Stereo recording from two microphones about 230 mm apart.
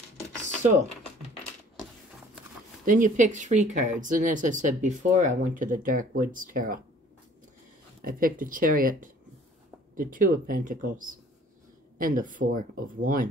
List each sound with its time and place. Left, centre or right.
2.8 s speech: right
8.0 s speech: right